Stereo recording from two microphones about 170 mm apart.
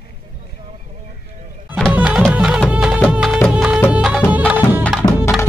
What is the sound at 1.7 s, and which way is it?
Music, 5° right (ahead or behind).